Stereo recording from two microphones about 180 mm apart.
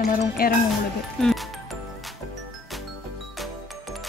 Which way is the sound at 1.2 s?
Centre (ahead or behind).